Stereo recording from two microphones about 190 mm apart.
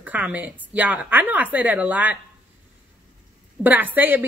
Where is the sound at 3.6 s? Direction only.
10° right (ahead or behind).